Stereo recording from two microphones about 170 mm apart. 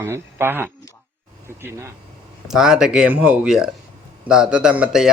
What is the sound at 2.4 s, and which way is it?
A man's voice, 5° right (ahead or behind).